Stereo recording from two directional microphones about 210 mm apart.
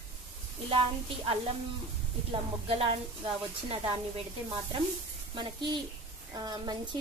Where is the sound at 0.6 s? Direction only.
25° right (ahead or behind).